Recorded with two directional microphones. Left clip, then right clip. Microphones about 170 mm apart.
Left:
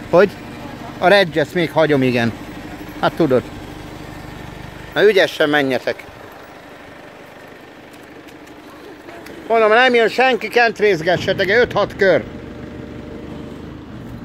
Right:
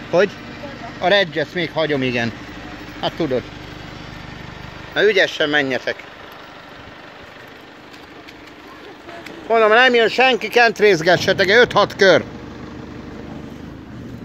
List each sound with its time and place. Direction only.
0.5 s vehicle: 70° left (ahead or behind)
1.0 s speech: 35° left (ahead or behind)
2.3 s vehicle: 70° left (ahead or behind)
3.0 s speech: 40° left (ahead or behind)
4.9 s speech: 30° left (ahead or behind)
9.5 s speech: 5° left (ahead or behind)
10.6 s speech: 20° right (ahead or behind)